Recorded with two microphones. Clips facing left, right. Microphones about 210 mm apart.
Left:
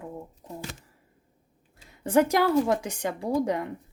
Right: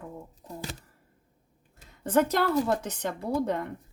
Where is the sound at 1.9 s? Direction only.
10° left (ahead or behind).